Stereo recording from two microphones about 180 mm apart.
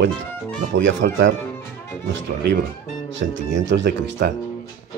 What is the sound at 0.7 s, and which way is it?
Speech, 85° right.